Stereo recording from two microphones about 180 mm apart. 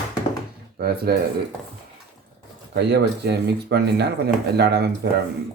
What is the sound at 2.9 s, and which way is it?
Speech, 65° right (ahead or behind).